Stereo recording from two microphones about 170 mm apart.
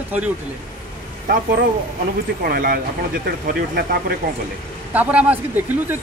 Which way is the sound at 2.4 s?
60° right (ahead or behind).